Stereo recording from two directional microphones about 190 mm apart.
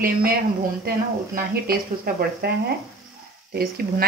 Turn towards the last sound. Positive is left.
turn(degrees=-55)  # may be behind; listen again after turning